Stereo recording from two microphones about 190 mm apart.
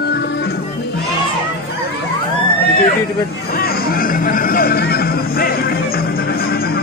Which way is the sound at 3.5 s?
55° left (ahead or behind).